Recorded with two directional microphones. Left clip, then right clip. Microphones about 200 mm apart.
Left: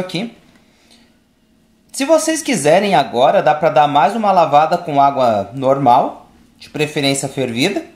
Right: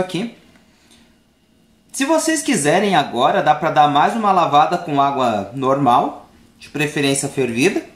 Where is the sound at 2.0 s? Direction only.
40° left (ahead or behind).